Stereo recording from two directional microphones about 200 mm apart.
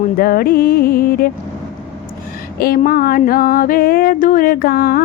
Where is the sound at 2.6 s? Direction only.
45° left (ahead or behind).